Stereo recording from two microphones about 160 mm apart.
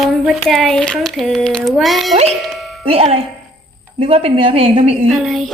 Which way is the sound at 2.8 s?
40° right (ahead or behind).